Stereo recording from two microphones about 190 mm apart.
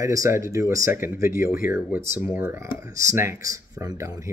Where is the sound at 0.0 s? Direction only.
15° right (ahead or behind).